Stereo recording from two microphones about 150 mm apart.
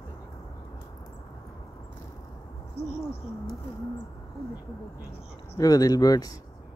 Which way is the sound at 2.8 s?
45° left (ahead or behind).